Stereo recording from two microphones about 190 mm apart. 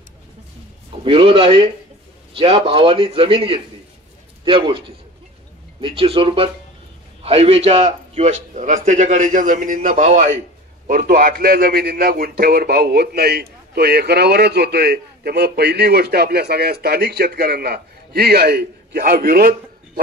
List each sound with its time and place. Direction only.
1.0 s a man's voice: 30° right (ahead or behind); by 19.5 s 55° right (ahead or behind)